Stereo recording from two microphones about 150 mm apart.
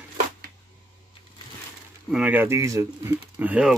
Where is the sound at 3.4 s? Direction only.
10° right (ahead or behind).